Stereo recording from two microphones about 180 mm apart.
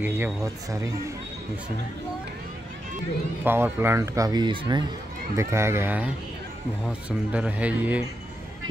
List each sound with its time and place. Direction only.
0.0 s speech: 15° right (ahead or behind)
3.4 s speech: 10° right (ahead or behind)